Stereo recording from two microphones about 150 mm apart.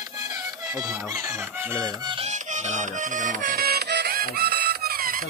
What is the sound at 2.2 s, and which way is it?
Music, 50° right (ahead or behind).